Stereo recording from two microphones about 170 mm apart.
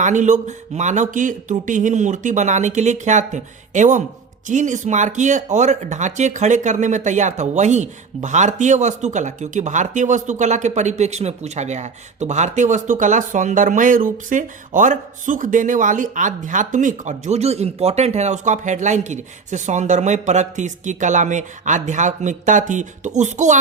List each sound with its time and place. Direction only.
0.0 s speech: 45° right (ahead or behind)